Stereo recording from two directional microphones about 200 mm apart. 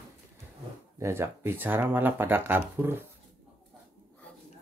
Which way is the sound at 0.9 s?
15° right (ahead or behind).